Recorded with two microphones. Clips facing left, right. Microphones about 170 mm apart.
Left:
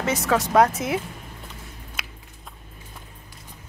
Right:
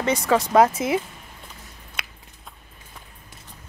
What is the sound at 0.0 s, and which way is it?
Speech, centre (ahead or behind).